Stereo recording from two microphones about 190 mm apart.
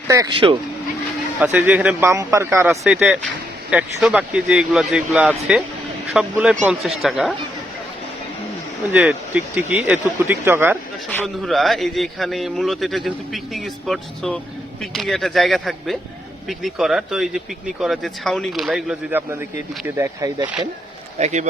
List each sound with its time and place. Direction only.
0.1 s speech: 20° right (ahead or behind)
1.4 s a man's voice: 10° right (ahead or behind)
8.9 s speech: 5° right (ahead or behind)
11.1 s a man's voice: 5° left (ahead or behind)
21.2 s a man's voice: 35° right (ahead or behind)